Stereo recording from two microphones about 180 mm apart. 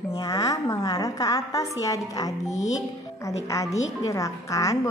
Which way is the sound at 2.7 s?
15° left (ahead or behind).